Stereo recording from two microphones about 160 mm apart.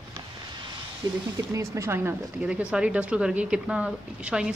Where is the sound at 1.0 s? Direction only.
25° right (ahead or behind); by 4.5 s 5° right (ahead or behind).